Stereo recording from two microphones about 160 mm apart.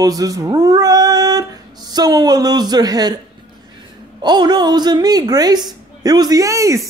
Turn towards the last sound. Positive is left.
turn(degrees=-20)  # may be behind; listen again after turning